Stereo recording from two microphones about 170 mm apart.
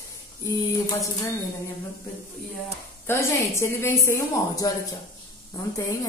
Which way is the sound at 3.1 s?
15° left (ahead or behind).